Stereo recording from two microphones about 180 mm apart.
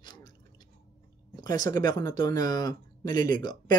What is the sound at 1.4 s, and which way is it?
Speech, 20° left (ahead or behind).